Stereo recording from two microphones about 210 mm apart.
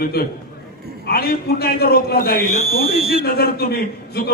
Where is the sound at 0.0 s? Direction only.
45° left (ahead or behind).